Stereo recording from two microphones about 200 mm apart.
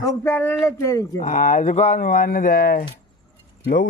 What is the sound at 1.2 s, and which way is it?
Speech, 40° left (ahead or behind).